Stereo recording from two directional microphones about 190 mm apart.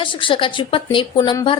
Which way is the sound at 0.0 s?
25° left (ahead or behind).